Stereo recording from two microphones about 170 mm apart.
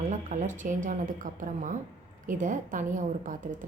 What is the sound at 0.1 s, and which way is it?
A woman's voice, 45° right (ahead or behind).